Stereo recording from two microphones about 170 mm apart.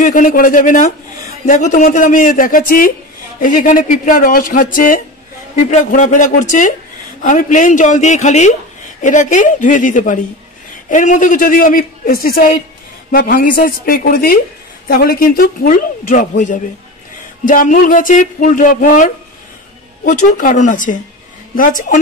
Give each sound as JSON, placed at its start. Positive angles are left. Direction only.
{"t": 0.0, "sound": "a man's voice", "side_deg": 50}